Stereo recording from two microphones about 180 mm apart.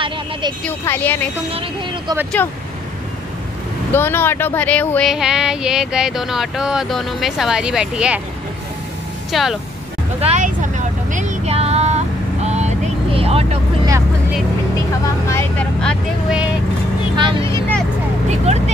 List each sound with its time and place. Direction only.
0.0 s vehicle: 25° right (ahead or behind)
0.7 s speech: 10° left (ahead or behind)
1.5 s speech: 30° right (ahead or behind)
2.4 s speech: 10° left (ahead or behind)
3.9 s a sound: 10° left (ahead or behind); by 8.2 s 5° right (ahead or behind)
9.3 s a sound: centre (ahead or behind)
10.2 s vehicle: 40° right (ahead or behind)
15.8 s a sound: 5° left (ahead or behind)
17.2 s vehicle: 30° right (ahead or behind)
17.5 s vehicle: 10° left (ahead or behind)
18.3 s speech: 40° right (ahead or behind)